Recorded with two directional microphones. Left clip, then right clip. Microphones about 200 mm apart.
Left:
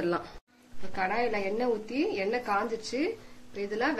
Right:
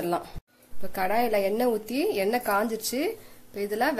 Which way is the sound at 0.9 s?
50° right (ahead or behind).